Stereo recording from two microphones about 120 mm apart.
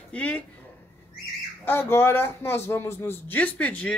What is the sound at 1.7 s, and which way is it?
A man's voice, 20° left (ahead or behind).